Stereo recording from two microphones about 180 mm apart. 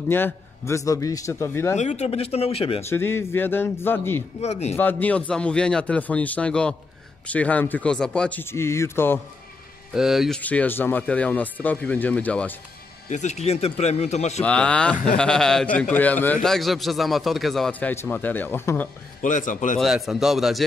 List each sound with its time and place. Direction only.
0.1 s speech: 15° left (ahead or behind)
1.8 s speech: 40° left (ahead or behind)
2.8 s speech: 15° left (ahead or behind)
4.4 s speech: 35° left (ahead or behind)
4.7 s speech: 10° left (ahead or behind)
9.9 s speech: centre (ahead or behind)
13.1 s speech: 40° left (ahead or behind)
14.4 s speech: 5° left (ahead or behind)
19.2 s a man's voice: 45° left (ahead or behind)
19.8 s speech: centre (ahead or behind)